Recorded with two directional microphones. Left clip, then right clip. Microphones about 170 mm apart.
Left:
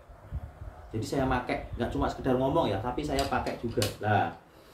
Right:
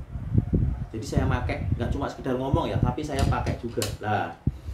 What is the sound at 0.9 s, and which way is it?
Speech, 5° right (ahead or behind).